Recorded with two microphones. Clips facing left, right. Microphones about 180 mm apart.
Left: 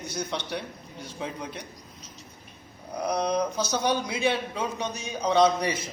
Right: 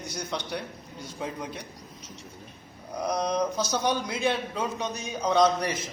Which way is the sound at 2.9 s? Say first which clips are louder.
Left 1 dB; centre (ahead or behind).